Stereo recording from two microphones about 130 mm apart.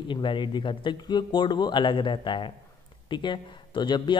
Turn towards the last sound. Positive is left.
turn(degrees=35)  # may be behind; listen again after turning